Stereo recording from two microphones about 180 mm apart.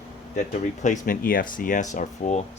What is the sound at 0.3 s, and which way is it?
Speech, 40° left (ahead or behind).